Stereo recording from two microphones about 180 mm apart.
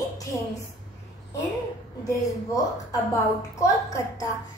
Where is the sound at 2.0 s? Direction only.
20° left (ahead or behind).